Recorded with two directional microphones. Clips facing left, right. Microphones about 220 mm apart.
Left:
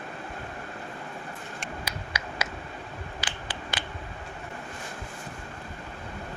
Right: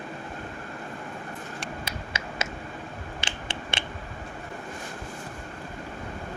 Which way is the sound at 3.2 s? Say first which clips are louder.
Right 2 dB; 25° right (ahead or behind).